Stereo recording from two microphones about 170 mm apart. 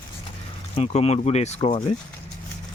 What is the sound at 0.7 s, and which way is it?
Speech, 35° left (ahead or behind).